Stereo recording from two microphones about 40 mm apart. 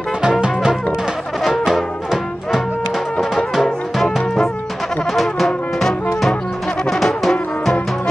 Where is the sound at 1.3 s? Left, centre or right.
Centre.